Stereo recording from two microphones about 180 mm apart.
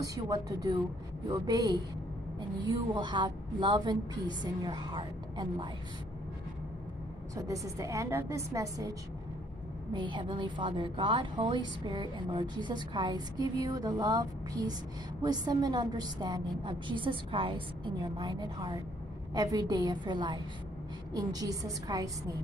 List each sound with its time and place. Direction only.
0.0 s a woman's voice: 20° right (ahead or behind)
7.3 s a woman's voice: 20° right (ahead or behind)
9.9 s a woman's voice: 25° right (ahead or behind)